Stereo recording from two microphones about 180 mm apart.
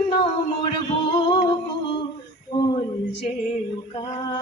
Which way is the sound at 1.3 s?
20° left (ahead or behind).